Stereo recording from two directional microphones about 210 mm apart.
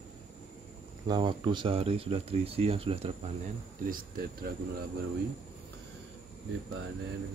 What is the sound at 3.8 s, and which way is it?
Speech, 40° right (ahead or behind).